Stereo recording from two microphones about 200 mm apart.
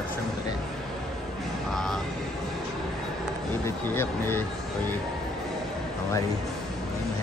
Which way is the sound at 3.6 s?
10° left (ahead or behind).